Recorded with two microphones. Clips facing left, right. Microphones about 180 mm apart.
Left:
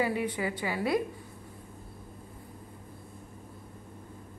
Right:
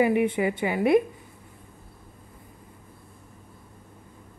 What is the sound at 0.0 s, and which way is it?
A woman's voice, 20° right (ahead or behind).